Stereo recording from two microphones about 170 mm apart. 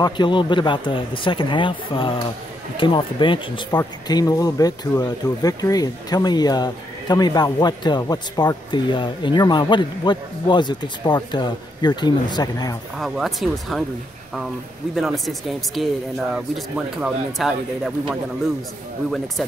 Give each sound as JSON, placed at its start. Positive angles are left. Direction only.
{"t": 0.0, "sound": "speech", "side_deg": 25}
{"t": 13.0, "sound": "speech", "side_deg": 0}
{"t": 15.0, "sound": "speech", "side_deg": 0}